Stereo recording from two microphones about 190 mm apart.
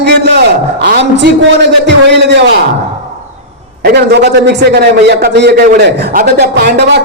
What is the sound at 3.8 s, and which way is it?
Speech, 60° right (ahead or behind).